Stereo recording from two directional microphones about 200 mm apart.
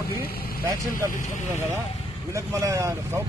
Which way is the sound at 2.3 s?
15° right (ahead or behind).